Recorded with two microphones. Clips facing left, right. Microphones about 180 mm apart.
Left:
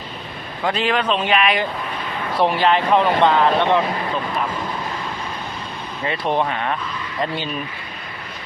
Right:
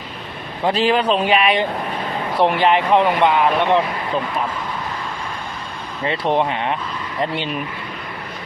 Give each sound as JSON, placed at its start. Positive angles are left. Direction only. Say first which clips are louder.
{"t": 0.6, "sound": "a man's voice", "louder": "right 3 dB", "side_deg": -35}
{"t": 2.4, "sound": "speech", "louder": "right 1 dB", "side_deg": -20}
{"t": 6.1, "sound": "speech", "louder": "right 2 dB", "side_deg": -25}